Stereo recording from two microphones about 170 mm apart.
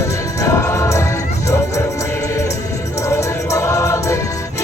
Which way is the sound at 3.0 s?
15° left (ahead or behind).